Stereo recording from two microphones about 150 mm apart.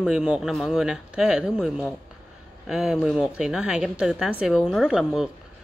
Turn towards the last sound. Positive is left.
turn(degrees=-5)  # may be behind; listen again after turning